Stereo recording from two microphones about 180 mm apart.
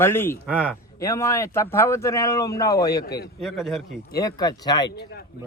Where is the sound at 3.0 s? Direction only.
60° left (ahead or behind).